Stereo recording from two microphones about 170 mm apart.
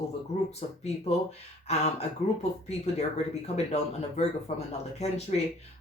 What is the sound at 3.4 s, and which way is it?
Speech, 40° left (ahead or behind).